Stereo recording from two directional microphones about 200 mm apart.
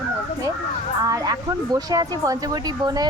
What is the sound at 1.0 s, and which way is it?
Speech, 15° right (ahead or behind).